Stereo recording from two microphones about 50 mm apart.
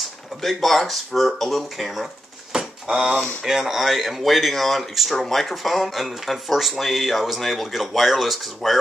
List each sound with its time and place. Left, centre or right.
0.0 s speech: centre
2.5 s a sound: centre
3.4 s speech: centre